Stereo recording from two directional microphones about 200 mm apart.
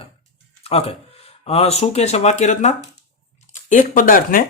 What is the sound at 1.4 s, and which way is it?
Speech, 30° left (ahead or behind).